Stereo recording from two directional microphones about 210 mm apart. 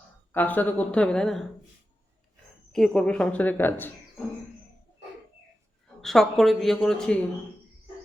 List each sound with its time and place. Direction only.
0.3 s a woman's voice: 10° left (ahead or behind)
2.7 s a woman's voice: 5° left (ahead or behind)
6.0 s a woman's voice: centre (ahead or behind)